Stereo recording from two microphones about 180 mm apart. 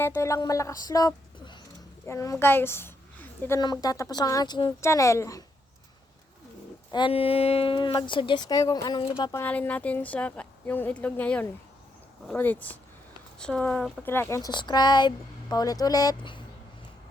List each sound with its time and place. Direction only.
0.0 s a woman's voice: 15° left (ahead or behind)
3.6 s speech: 20° left (ahead or behind)
6.9 s speech: 30° left (ahead or behind)
9.4 s a woman's voice: 10° left (ahead or behind); by 16.4 s 25° left (ahead or behind)